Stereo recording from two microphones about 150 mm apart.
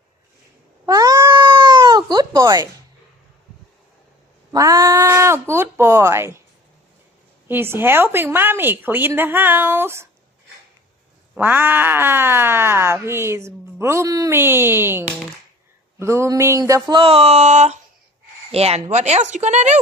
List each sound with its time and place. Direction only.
0.9 s cat: 25° right (ahead or behind)
4.5 s a sound: 20° right (ahead or behind)
7.4 s speech: 15° right (ahead or behind)
11.3 s speech: 10° right (ahead or behind); by 17.1 s 30° right (ahead or behind)
17.1 s speech: 45° right (ahead or behind)